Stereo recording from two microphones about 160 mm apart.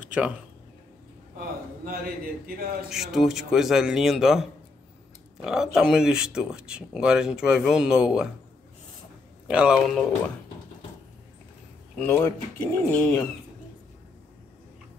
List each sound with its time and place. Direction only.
1.9 s a man's voice: 65° right (ahead or behind)
2.9 s speech: centre (ahead or behind)
9.5 s speech: 5° right (ahead or behind)
12.0 s speech: 15° left (ahead or behind)